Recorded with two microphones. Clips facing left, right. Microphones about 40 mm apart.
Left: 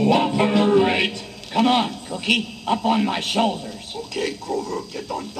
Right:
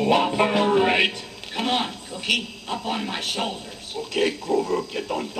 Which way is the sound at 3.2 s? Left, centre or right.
Left.